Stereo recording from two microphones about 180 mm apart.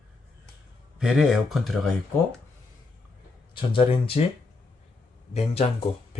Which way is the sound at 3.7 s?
30° left (ahead or behind).